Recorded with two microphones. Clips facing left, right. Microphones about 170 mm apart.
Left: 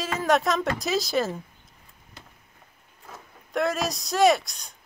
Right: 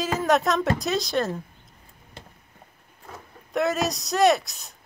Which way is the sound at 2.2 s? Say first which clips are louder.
Right 4 dB; 25° right (ahead or behind).